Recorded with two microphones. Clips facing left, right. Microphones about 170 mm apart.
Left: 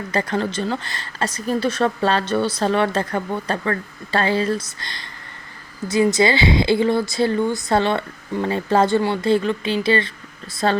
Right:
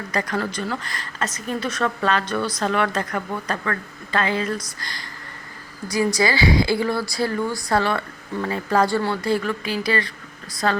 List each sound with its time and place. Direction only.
0.1 s speech: 30° left (ahead or behind)